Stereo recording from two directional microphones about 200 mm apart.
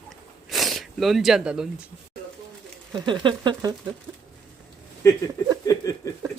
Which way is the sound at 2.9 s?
25° right (ahead or behind).